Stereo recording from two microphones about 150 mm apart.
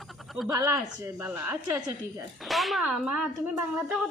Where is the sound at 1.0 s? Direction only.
15° right (ahead or behind).